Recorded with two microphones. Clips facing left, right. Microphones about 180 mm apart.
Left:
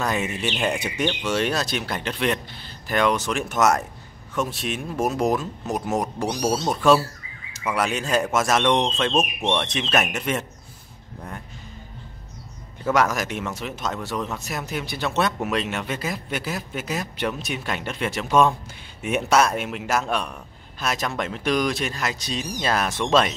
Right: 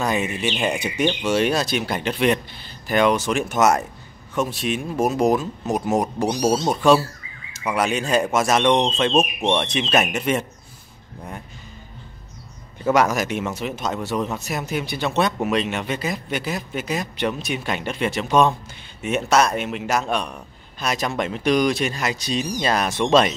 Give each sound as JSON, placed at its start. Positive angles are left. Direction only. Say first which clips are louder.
{"t": 0.0, "sound": "a man's voice", "louder": "right 2 dB", "side_deg": 0}
{"t": 12.9, "sound": "a man's voice", "louder": "right 3 dB", "side_deg": 0}